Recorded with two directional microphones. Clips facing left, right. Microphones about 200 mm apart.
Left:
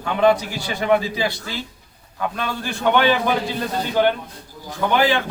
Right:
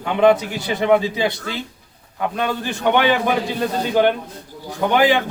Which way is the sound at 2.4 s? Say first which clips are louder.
Right 3 dB; 20° right (ahead or behind).